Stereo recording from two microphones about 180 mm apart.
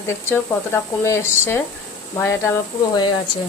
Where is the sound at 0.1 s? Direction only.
15° left (ahead or behind).